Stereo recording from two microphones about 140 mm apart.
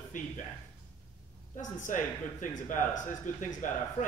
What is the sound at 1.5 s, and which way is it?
Speech, 65° left (ahead or behind).